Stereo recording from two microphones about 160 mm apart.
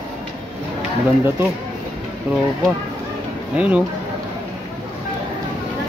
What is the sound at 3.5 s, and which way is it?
Speech, 10° right (ahead or behind).